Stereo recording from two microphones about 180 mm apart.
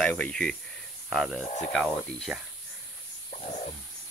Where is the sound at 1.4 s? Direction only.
40° left (ahead or behind).